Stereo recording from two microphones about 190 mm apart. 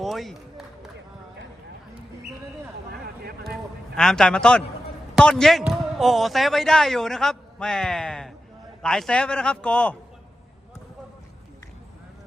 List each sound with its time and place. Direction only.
0.0 s run: centre (ahead or behind)
3.9 s a man's voice: 5° left (ahead or behind)